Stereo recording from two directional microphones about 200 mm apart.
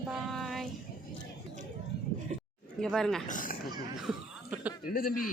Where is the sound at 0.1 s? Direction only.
Centre (ahead or behind).